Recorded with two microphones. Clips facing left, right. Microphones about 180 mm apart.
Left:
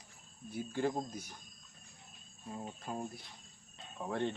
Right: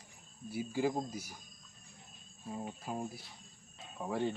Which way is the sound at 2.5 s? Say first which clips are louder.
Right 2 dB; 5° right (ahead or behind).